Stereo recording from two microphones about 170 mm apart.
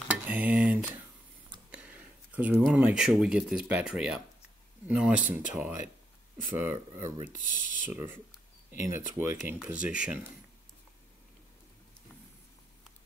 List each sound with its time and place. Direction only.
0.1 s a sound: 10° right (ahead or behind)
1.7 s speech: 5° right (ahead or behind)
7.2 s speech: 45° left (ahead or behind)
8.9 s speech: 15° right (ahead or behind)